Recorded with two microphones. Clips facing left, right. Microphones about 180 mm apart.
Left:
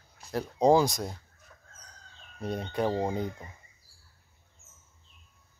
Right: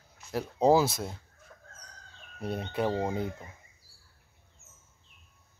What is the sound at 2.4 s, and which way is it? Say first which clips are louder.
Speech: left 1 dB; 5° right (ahead or behind).